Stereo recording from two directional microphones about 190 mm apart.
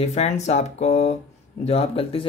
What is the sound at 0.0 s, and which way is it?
Speech, 35° left (ahead or behind).